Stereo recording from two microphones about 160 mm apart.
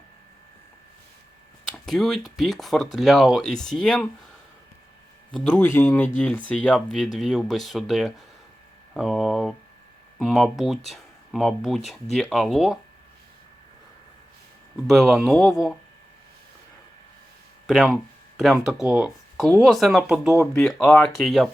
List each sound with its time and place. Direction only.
1.7 s a sound: centre (ahead or behind)
2.3 s speech: centre (ahead or behind)
5.3 s speech: 5° left (ahead or behind)
14.9 s speech: centre (ahead or behind)
17.7 s speech: centre (ahead or behind)
20.4 s speech: 15° left (ahead or behind)
21.2 s speech: centre (ahead or behind)